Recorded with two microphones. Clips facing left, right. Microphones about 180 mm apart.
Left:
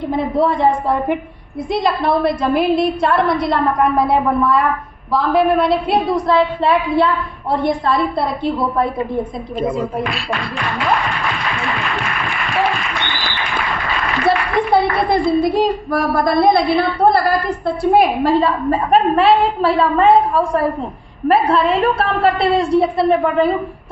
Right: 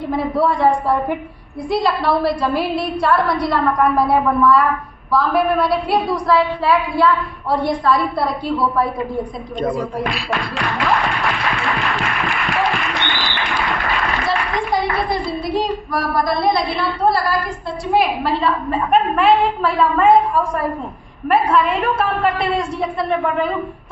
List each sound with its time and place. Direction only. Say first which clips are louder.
0.2 s a woman's voice: left 1 dB; 20° left (ahead or behind)
14.3 s clapping: left 8 dB; 55° left (ahead or behind)
16.2 s a woman's voice: left 7 dB; 55° left (ahead or behind); by 23.6 s 35° left (ahead or behind)